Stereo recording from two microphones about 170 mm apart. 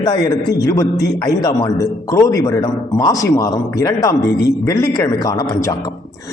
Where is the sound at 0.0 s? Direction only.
25° left (ahead or behind).